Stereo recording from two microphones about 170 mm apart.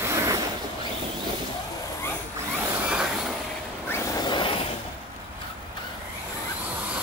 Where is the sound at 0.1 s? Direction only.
20° right (ahead or behind).